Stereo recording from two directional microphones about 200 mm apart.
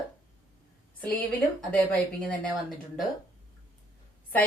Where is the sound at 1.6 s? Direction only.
5° left (ahead or behind).